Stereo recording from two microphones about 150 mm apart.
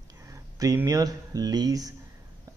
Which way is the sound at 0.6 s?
20° right (ahead or behind).